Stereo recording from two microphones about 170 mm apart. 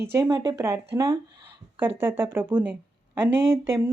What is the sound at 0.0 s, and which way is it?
Speech, 15° right (ahead or behind).